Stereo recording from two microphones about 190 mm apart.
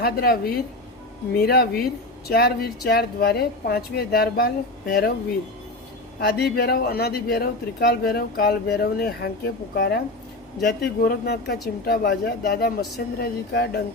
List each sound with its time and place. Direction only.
0.0 s a woman's voice: 55° left (ahead or behind)
6.1 s a man's voice: 55° left (ahead or behind)